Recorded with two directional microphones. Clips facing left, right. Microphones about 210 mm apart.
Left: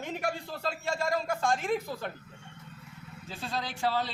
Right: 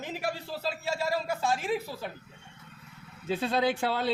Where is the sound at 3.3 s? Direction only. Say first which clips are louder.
Right 8 dB; 60° right (ahead or behind).